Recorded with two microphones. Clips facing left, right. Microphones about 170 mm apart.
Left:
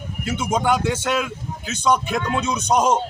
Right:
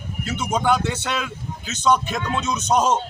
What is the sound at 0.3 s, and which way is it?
Speech, 10° left (ahead or behind).